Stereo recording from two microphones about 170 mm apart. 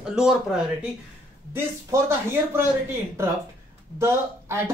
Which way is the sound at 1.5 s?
15° right (ahead or behind).